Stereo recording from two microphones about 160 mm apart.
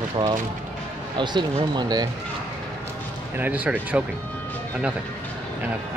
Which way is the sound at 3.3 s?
10° right (ahead or behind).